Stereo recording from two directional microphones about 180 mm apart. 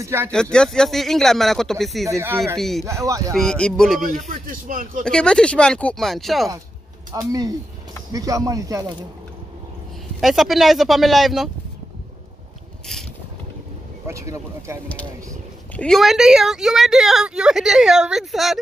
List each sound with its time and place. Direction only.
0.0 s speech: 15° right (ahead or behind)
0.3 s a woman's voice: 5° left (ahead or behind)
2.0 s speech: 15° right (ahead or behind)
2.5 s a woman's voice: centre (ahead or behind)
2.8 s speech: 15° right (ahead or behind)
3.3 s a woman's voice: 5° left (ahead or behind)
4.3 s speech: 50° right (ahead or behind)
5.0 s a woman's voice: 5° left (ahead or behind)
7.1 s speech: 20° right (ahead or behind)
10.2 s a woman's voice: centre (ahead or behind)
14.0 s speech: 15° right (ahead or behind)
15.7 s a woman's voice: 5° left (ahead or behind)